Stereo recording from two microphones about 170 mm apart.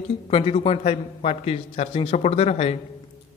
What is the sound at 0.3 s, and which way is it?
A man's voice, 35° left (ahead or behind).